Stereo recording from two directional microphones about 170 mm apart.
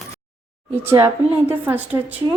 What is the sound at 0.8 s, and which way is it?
A woman's voice, 15° right (ahead or behind).